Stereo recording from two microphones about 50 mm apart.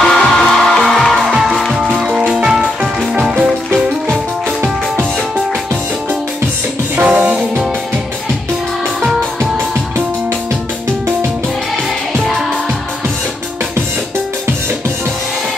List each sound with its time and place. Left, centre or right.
0.0 s music: centre
2.0 s music: centre
7.0 s music: right
12.1 s music: centre